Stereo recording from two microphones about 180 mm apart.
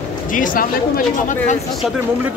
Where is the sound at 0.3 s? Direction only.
50° left (ahead or behind).